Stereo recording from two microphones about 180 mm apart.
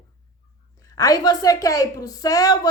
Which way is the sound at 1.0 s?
20° left (ahead or behind).